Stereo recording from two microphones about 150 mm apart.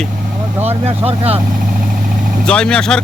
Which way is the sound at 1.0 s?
40° right (ahead or behind).